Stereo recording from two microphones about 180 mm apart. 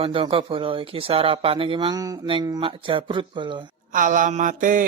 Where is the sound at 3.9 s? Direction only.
45° right (ahead or behind).